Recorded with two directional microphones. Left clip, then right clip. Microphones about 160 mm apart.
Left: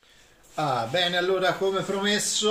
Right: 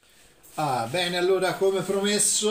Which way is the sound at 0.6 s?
20° left (ahead or behind).